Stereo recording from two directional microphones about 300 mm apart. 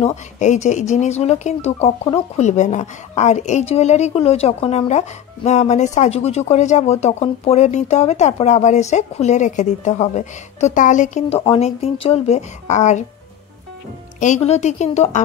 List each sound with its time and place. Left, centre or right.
0.0 s speech: left
14.2 s speech: left